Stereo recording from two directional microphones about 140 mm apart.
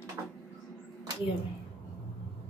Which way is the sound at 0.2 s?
20° right (ahead or behind).